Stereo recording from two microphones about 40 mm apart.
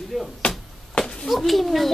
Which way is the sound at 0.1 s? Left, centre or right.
Centre.